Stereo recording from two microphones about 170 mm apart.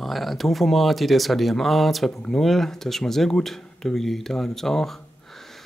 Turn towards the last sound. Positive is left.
turn(degrees=0)  # may be behind; listen again after turning